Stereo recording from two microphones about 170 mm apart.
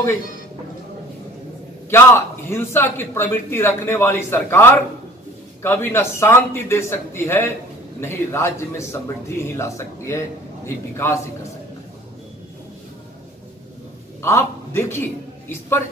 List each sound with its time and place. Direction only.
1.9 s speech: 15° left (ahead or behind)
14.2 s a man's voice: 15° left (ahead or behind)